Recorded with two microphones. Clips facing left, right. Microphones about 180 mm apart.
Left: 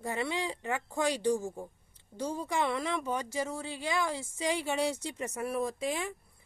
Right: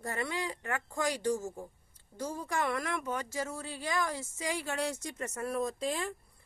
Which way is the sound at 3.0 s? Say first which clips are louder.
Left 2 dB; 15° left (ahead or behind).